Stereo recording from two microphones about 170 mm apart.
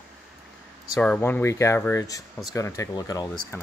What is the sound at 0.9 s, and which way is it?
Speech, 5° left (ahead or behind).